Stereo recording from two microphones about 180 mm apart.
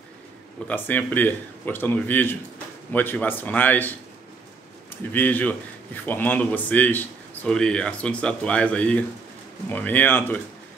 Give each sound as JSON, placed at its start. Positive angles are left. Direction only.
{"t": 0.7, "sound": "speech", "side_deg": 10}
{"t": 5.1, "sound": "speech", "side_deg": 10}